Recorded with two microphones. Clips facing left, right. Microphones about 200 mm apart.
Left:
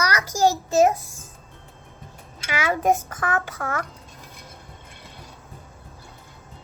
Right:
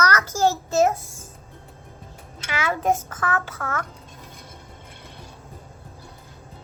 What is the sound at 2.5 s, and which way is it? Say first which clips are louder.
A child's voice: left 2 dB; 15° left (ahead or behind).